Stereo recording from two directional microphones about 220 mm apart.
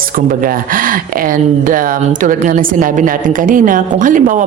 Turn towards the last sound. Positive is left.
turn(degrees=-35)  # may be behind; listen again after turning